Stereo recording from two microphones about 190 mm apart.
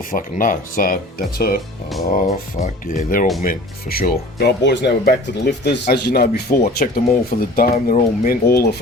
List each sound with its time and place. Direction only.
0.1 s speech: 45° left (ahead or behind)
2.0 s speech: 40° left (ahead or behind); by 8.7 s 55° left (ahead or behind)